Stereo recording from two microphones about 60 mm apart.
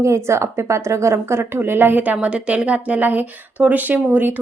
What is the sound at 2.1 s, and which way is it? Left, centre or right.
Speech, right.